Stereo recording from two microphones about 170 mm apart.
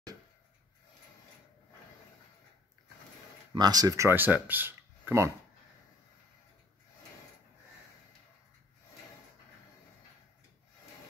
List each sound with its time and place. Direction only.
3.5 s speech: 25° right (ahead or behind)